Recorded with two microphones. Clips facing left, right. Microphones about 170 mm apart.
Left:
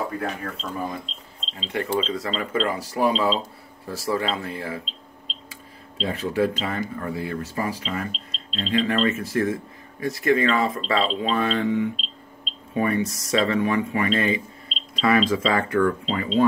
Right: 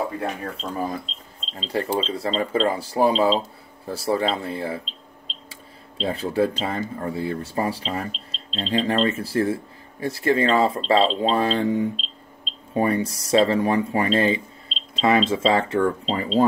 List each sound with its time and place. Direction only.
0.2 s speech: 30° right (ahead or behind)